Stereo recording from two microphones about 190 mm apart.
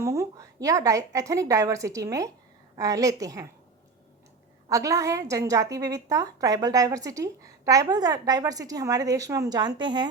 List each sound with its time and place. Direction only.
0.0 s a woman's voice: 15° right (ahead or behind)
4.7 s a woman's voice: 15° right (ahead or behind)